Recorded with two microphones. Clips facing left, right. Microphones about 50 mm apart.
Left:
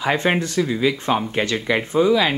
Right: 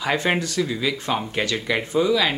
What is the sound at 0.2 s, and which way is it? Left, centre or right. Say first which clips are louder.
Speech: left 3 dB; centre.